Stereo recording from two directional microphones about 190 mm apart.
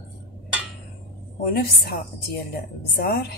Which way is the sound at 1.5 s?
50° left (ahead or behind).